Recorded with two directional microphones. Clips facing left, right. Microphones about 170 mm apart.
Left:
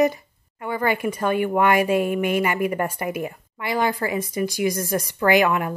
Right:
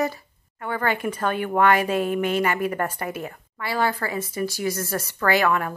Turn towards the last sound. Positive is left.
turn(degrees=15)  # may be behind; listen again after turning